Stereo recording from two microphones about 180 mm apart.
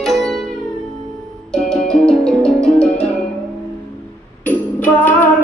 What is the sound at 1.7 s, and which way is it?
Music, 5° left (ahead or behind).